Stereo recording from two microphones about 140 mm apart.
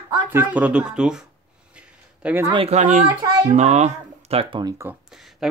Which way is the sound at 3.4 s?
55° right (ahead or behind).